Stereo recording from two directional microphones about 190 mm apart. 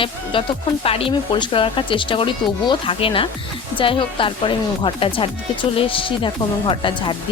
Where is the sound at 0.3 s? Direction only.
25° left (ahead or behind).